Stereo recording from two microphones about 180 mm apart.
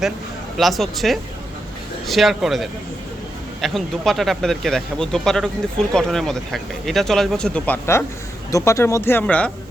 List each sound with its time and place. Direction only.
0.5 s speech: centre (ahead or behind)